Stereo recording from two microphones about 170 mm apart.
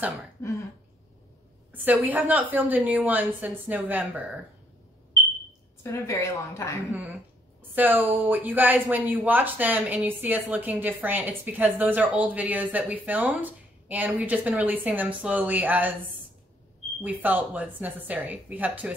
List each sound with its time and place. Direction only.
0.4 s a woman's voice: 15° left (ahead or behind)
1.7 s speech: 10° right (ahead or behind)
5.8 s a woman's voice: 15° left (ahead or behind)
6.9 s speech: 10° right (ahead or behind)
17.0 s speech: 10° right (ahead or behind)